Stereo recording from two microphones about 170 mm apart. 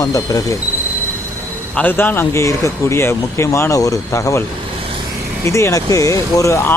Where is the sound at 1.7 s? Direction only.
10° left (ahead or behind).